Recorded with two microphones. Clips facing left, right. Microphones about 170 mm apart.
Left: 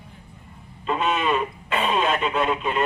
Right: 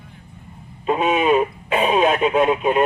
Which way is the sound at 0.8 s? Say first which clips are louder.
Right 6 dB; 50° right (ahead or behind).